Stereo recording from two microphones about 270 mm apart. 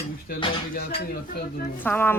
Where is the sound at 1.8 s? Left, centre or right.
Centre.